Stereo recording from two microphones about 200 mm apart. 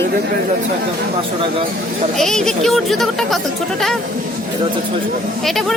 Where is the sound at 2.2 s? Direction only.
Centre (ahead or behind).